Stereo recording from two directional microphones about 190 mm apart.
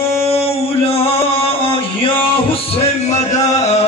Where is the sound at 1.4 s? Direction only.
30° left (ahead or behind).